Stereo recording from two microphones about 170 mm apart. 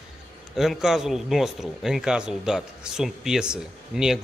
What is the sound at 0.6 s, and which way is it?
Speech, centre (ahead or behind).